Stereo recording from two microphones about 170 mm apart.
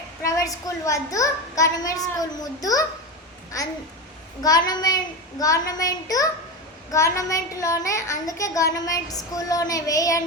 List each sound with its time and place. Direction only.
0.2 s a child's voice: 20° left (ahead or behind)
4.4 s a child's voice: 20° left (ahead or behind)